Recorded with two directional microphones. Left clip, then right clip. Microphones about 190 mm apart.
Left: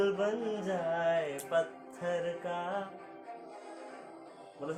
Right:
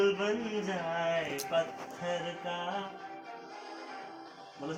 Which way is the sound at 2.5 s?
15° left (ahead or behind).